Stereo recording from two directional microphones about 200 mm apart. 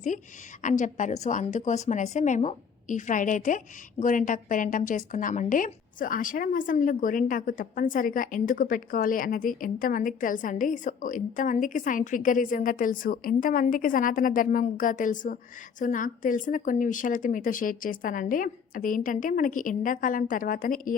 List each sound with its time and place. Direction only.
0.6 s a woman's voice: 40° left (ahead or behind)